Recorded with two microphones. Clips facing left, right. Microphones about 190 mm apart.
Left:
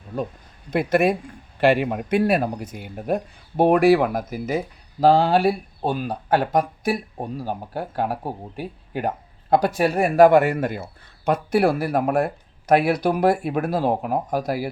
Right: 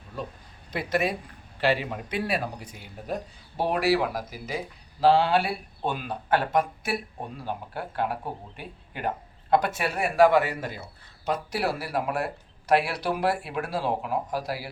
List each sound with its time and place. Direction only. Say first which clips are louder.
0.7 s speech: left 8 dB; 50° left (ahead or behind)